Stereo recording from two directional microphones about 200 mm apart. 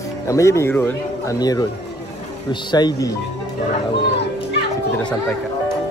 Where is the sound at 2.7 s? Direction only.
20° left (ahead or behind).